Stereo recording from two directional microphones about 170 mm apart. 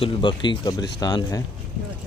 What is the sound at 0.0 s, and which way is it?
A man's voice, 30° left (ahead or behind).